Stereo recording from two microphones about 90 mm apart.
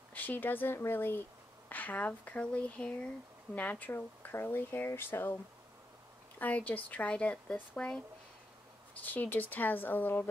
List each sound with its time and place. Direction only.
0.1 s speech: 20° left (ahead or behind)
6.4 s speech: 15° left (ahead or behind)